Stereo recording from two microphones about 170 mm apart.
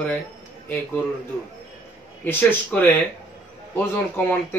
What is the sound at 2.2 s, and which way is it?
Speech, 10° left (ahead or behind).